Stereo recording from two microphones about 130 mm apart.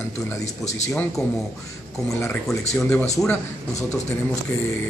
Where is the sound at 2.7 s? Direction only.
15° left (ahead or behind).